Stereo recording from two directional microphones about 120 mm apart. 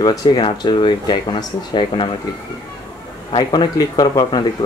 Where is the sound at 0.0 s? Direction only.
35° left (ahead or behind).